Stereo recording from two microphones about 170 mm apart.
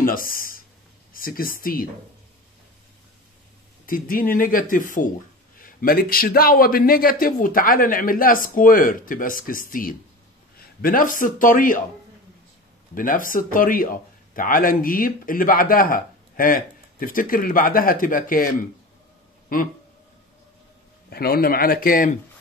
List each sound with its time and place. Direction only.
0.0 s speech: 55° left (ahead or behind)
3.8 s a man's voice: 55° left (ahead or behind)
12.9 s speech: 55° left (ahead or behind)
21.1 s speech: 65° left (ahead or behind)